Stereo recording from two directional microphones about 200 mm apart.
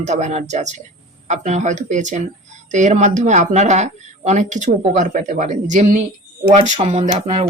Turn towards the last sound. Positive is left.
turn(degrees=-30)  # may be behind; listen again after turning